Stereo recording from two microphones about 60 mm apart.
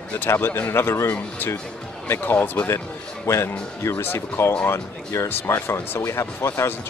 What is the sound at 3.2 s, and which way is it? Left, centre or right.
Speech, left.